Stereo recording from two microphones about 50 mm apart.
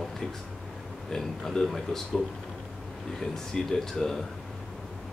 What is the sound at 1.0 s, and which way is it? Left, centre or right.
Speech, centre.